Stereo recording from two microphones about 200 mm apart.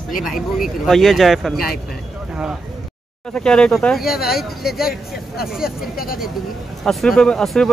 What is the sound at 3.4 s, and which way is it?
Speech, 5° left (ahead or behind).